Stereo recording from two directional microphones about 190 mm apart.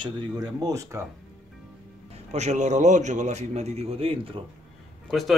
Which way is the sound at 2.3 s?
35° right (ahead or behind).